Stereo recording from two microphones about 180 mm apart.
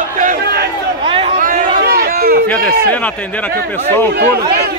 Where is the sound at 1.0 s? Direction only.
30° right (ahead or behind).